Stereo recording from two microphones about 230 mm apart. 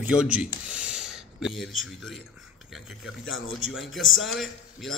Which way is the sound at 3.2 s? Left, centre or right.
Left.